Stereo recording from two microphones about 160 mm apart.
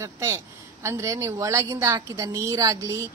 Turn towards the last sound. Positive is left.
turn(degrees=-20)  # may be behind; listen again after turning